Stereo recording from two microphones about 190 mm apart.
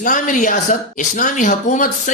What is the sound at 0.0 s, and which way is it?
Speech, 45° left (ahead or behind).